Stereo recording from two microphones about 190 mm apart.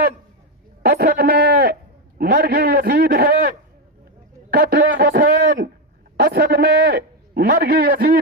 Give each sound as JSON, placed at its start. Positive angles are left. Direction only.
{"t": 0.8, "sound": "a man's voice", "side_deg": -55}
{"t": 4.5, "sound": "a man's voice", "side_deg": -55}